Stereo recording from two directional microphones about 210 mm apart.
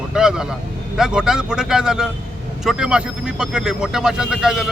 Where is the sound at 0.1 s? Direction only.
5° right (ahead or behind).